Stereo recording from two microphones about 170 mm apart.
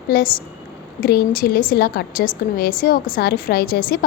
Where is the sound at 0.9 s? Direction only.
60° left (ahead or behind).